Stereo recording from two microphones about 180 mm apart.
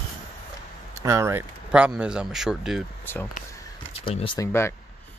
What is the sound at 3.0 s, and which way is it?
Speech, 10° left (ahead or behind).